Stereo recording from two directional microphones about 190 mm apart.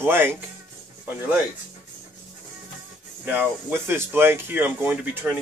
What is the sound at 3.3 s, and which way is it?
Speech, 10° right (ahead or behind).